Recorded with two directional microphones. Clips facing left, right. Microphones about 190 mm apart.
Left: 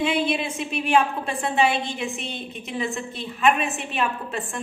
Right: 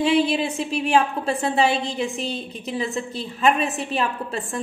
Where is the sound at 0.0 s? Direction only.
35° right (ahead or behind).